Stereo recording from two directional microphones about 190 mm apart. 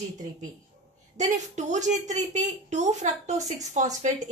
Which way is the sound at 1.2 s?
40° right (ahead or behind).